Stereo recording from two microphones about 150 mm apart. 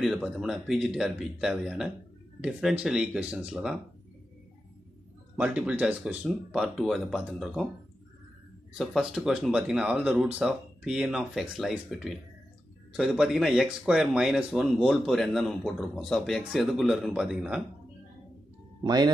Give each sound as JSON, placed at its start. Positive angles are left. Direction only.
{"t": 0.0, "sound": "speech", "side_deg": 0}
{"t": 5.4, "sound": "speech", "side_deg": -5}
{"t": 8.7, "sound": "speech", "side_deg": -5}
{"t": 18.8, "sound": "speech", "side_deg": -30}